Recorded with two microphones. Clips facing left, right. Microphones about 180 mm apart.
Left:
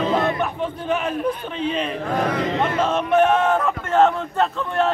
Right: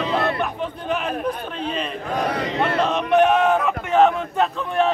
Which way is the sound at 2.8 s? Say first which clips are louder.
Even; 15° right (ahead or behind).